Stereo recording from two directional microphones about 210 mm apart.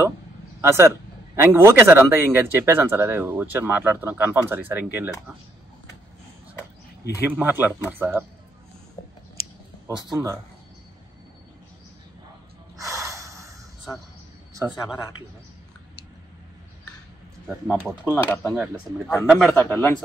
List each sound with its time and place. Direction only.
0.6 s a man's voice: 10° right (ahead or behind)
7.2 s a man's voice: 10° right (ahead or behind)
10.1 s a man's voice: 15° right (ahead or behind)
12.7 s snort: 15° right (ahead or behind)
14.5 s a sound: 15° right (ahead or behind)
17.5 s a man's voice: 10° right (ahead or behind)
18.0 s speech: 10° left (ahead or behind)